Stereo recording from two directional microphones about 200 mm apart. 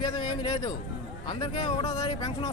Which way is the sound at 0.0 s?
20° left (ahead or behind).